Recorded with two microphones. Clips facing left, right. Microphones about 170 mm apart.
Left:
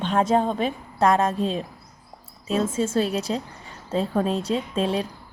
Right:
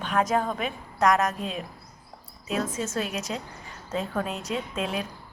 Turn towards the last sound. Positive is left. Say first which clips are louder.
# left 6 dB
turn(degrees=30)  # may be behind; listen again after turning